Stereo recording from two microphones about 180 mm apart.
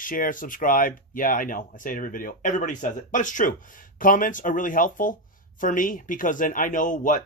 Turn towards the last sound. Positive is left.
turn(degrees=45)  # may be behind; listen again after turning